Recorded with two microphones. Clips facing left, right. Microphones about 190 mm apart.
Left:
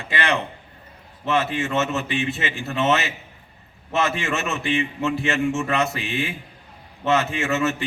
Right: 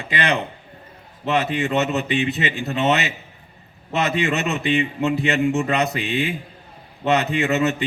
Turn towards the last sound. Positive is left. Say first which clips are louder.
# right 3 dB
turn(degrees=-15)  # may be behind; listen again after turning